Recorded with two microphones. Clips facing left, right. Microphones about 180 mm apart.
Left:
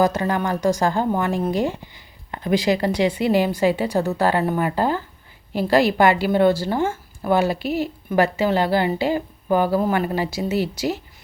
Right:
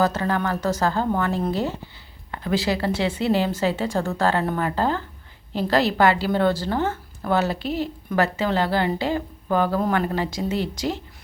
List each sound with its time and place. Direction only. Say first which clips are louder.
0.0 s a woman's voice: left 2 dB; 15° left (ahead or behind)